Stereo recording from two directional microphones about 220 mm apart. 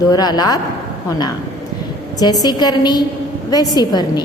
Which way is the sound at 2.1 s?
15° left (ahead or behind).